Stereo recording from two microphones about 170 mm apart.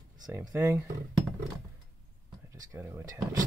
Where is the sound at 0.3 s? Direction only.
15° right (ahead or behind).